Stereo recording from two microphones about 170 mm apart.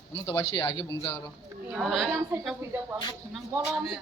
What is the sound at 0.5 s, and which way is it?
Speech, 25° left (ahead or behind).